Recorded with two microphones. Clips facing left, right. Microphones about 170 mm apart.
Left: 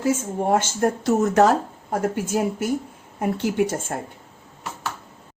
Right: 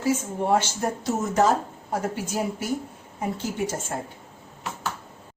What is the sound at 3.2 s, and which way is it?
Speech, 65° left (ahead or behind).